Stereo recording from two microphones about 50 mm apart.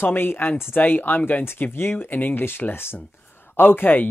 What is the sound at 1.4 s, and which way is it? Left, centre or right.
Speech, left.